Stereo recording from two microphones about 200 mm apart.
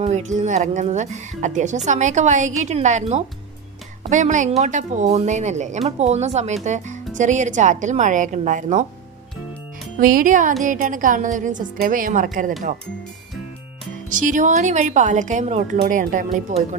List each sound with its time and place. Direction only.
0.0 s a woman's voice: 35° right (ahead or behind)
10.0 s a woman's voice: 45° right (ahead or behind)
14.1 s a woman's voice: 40° right (ahead or behind)